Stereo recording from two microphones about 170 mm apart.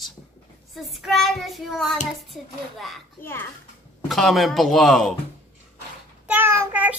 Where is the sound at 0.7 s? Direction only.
Centre (ahead or behind).